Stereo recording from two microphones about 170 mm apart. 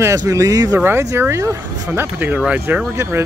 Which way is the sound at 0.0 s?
20° right (ahead or behind).